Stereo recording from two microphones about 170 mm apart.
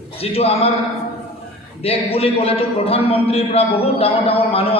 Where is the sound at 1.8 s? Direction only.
35° left (ahead or behind).